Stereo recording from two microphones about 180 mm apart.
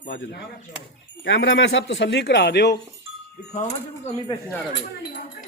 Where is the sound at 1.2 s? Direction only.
90° left; by 2.8 s 70° left (ahead or behind).